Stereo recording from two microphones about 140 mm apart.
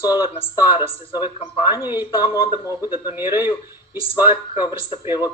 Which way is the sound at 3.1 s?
15° right (ahead or behind).